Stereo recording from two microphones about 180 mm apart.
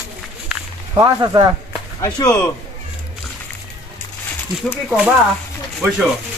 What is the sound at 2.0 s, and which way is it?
Speech, 20° left (ahead or behind).